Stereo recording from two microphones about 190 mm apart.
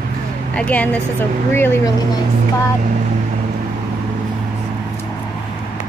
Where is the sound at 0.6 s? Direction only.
5° left (ahead or behind).